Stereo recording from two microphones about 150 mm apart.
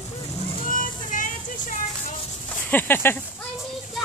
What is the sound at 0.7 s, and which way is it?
Music, 60° left (ahead or behind).